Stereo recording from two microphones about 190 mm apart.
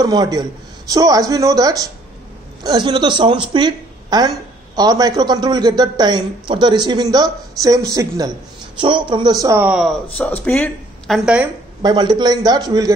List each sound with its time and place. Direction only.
0.0 s a man's voice: 20° right (ahead or behind); by 9.9 s 5° right (ahead or behind)
10.1 s speech: 10° left (ahead or behind)
11.8 s a man's voice: 20° right (ahead or behind)